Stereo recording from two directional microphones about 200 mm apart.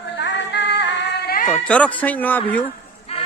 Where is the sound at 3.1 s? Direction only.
30° left (ahead or behind).